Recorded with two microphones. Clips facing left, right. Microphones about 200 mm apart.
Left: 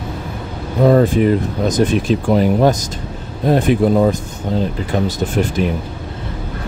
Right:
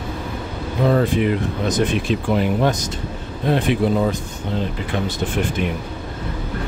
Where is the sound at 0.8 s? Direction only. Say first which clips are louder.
Left 6 dB; 40° left (ahead or behind).